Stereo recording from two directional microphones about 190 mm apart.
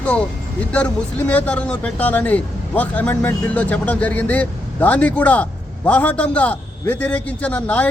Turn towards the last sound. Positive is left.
turn(degrees=5)  # may be behind; listen again after turning